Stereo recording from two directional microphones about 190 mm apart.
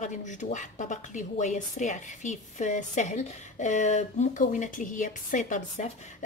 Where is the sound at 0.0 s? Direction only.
40° left (ahead or behind).